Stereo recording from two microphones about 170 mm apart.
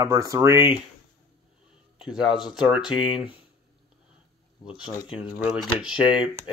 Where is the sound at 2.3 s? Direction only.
5° right (ahead or behind).